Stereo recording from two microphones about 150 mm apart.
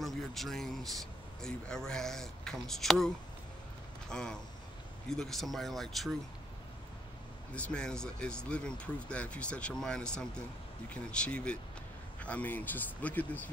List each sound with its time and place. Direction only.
0.0 s speech: centre (ahead or behind)
4.1 s speech: 5° left (ahead or behind)
7.5 s speech: 5° left (ahead or behind)